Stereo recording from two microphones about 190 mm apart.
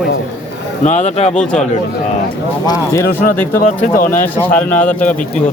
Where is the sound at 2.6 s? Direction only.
15° left (ahead or behind).